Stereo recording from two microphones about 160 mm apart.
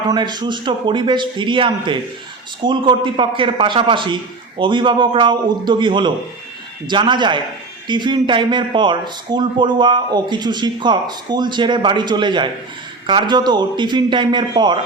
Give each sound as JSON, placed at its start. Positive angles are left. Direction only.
{"t": 0.1, "sound": "a man's voice", "side_deg": -25}